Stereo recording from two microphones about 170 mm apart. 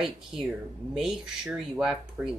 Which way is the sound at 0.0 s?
5° right (ahead or behind).